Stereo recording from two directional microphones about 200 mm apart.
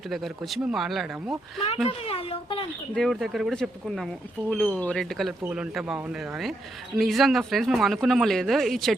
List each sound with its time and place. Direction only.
0.1 s speech: centre (ahead or behind)
1.9 s speech: 30° left (ahead or behind)
2.9 s speech: centre (ahead or behind)